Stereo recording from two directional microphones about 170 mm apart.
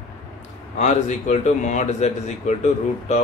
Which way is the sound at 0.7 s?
45° left (ahead or behind).